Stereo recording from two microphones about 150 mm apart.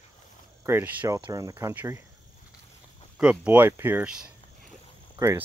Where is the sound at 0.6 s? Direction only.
15° right (ahead or behind).